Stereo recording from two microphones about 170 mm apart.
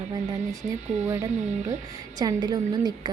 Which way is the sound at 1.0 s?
15° right (ahead or behind).